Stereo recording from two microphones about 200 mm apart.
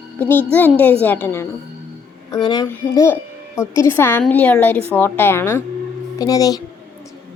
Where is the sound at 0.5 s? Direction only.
10° left (ahead or behind).